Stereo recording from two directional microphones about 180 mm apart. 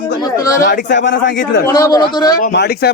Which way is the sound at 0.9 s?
80° left.